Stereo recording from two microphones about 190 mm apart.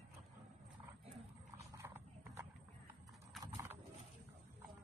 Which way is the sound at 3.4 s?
15° right (ahead or behind).